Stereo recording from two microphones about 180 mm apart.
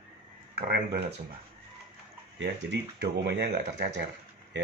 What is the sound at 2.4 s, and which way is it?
Speech, 75° right (ahead or behind).